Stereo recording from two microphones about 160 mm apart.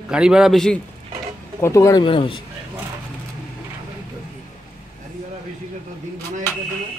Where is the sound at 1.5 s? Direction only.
20° left (ahead or behind).